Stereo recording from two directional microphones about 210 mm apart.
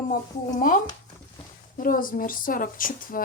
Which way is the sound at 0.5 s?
40° left (ahead or behind).